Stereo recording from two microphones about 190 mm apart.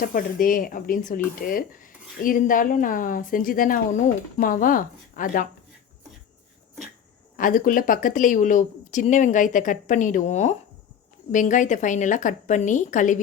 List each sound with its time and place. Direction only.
0.0 s speech: 45° left (ahead or behind)
7.3 s a woman's voice: 45° left (ahead or behind)